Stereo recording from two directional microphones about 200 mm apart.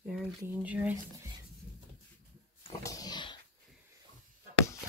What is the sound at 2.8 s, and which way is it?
Dog, 20° left (ahead or behind).